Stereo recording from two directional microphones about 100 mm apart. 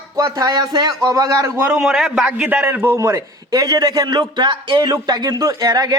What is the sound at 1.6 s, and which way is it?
A man's voice, 5° right (ahead or behind).